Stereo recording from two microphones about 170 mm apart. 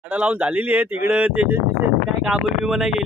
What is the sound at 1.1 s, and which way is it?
Speech, 5° right (ahead or behind).